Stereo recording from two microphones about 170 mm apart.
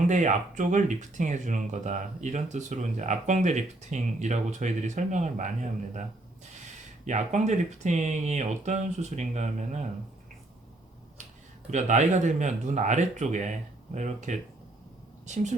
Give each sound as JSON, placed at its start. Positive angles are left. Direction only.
{"t": 0.1, "sound": "speech", "side_deg": -45}
{"t": 7.0, "sound": "speech", "side_deg": -45}
{"t": 11.7, "sound": "speech", "side_deg": -45}